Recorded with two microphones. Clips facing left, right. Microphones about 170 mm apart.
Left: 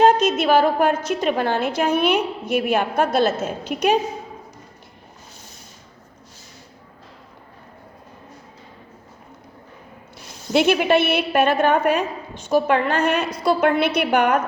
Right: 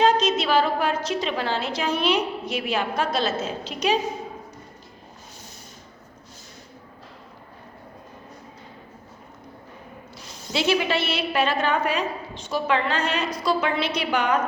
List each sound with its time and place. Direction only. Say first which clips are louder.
0.0 s a woman's voice: left 4 dB; 50° left (ahead or behind)
10.5 s a woman's voice: left 6 dB; 55° left (ahead or behind)